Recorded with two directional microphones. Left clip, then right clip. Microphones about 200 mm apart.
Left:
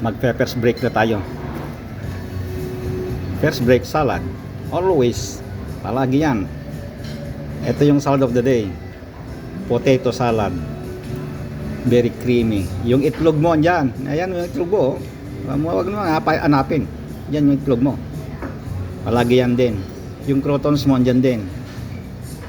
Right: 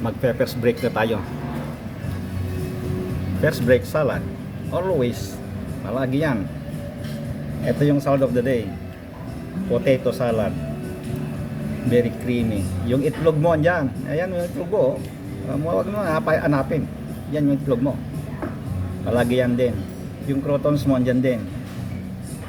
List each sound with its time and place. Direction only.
0.0 s a man's voice: centre (ahead or behind)
3.4 s speech: 10° left (ahead or behind)
7.8 s speech: 15° left (ahead or behind)
9.7 s speech: 15° left (ahead or behind)
11.9 s speech: 15° left (ahead or behind)
19.1 s speech: 15° left (ahead or behind)